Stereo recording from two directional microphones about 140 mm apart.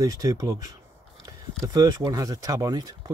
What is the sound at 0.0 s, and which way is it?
Speech, 25° right (ahead or behind).